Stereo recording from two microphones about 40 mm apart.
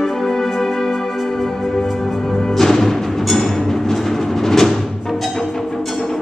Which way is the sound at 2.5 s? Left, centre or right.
Centre.